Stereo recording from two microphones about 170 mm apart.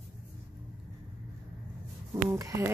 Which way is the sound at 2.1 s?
20° right (ahead or behind).